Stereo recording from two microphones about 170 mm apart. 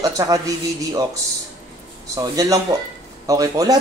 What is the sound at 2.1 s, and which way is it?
A man's voice, 20° right (ahead or behind).